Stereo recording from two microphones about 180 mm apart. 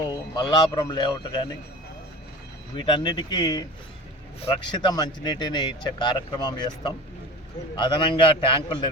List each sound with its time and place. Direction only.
0.0 s speech: 25° left (ahead or behind)
2.7 s speech: 25° left (ahead or behind)